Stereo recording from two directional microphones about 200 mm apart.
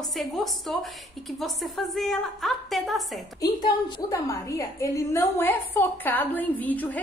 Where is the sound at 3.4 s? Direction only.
20° left (ahead or behind).